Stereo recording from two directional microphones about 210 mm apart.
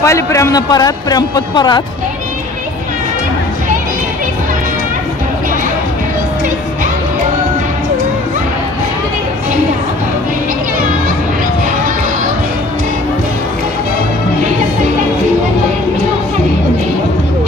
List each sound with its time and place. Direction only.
0.0 s a man's voice: 15° left (ahead or behind)